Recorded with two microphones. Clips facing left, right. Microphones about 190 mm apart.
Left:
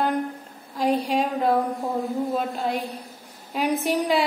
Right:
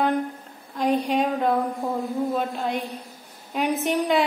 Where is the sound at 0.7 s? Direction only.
5° left (ahead or behind).